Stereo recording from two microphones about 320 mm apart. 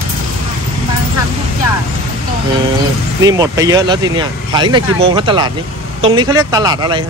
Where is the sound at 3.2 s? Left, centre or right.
Centre.